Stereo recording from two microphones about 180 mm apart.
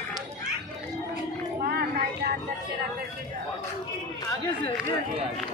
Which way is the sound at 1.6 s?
60° right (ahead or behind).